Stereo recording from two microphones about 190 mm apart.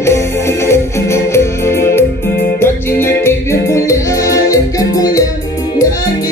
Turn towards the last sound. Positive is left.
turn(degrees=20)  # may be behind; listen again after turning